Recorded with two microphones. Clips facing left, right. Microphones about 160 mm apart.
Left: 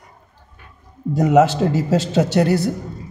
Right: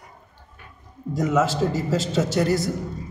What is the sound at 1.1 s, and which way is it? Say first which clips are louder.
A man's voice: left 7 dB; 65° left (ahead or behind).